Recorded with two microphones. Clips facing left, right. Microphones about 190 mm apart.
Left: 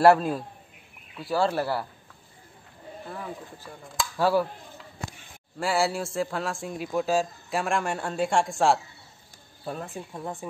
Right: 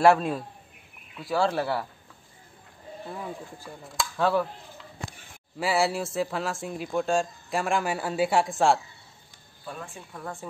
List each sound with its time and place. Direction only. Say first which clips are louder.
0.0 s speech: left 1 dB; centre (ahead or behind)
3.9 s speech: left 1 dB; 5° left (ahead or behind)
5.6 s speech: even; centre (ahead or behind)
9.7 s speech: left 5 dB; 35° left (ahead or behind)
10.2 s speech: left 1 dB; 15° left (ahead or behind)